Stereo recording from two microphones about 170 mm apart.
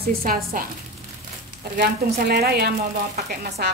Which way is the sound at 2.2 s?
70° right (ahead or behind).